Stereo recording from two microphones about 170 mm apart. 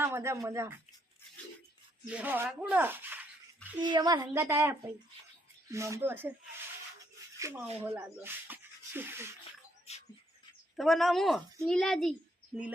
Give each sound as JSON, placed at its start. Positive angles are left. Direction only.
{"t": 0.0, "sound": "speech", "side_deg": -15}
{"t": 2.0, "sound": "speech", "side_deg": -10}
{"t": 3.8, "sound": "a woman's voice", "side_deg": -25}
{"t": 7.3, "sound": "speech", "side_deg": -15}
{"t": 9.9, "sound": "music", "side_deg": 40}
{"t": 10.8, "sound": "a woman's voice", "side_deg": 0}